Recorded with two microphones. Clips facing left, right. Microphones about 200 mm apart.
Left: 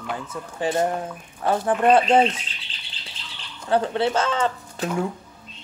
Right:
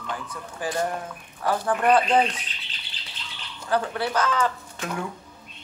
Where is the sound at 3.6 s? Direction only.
25° left (ahead or behind).